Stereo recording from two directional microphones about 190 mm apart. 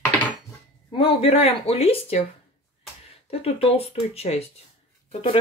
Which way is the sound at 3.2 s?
30° left (ahead or behind).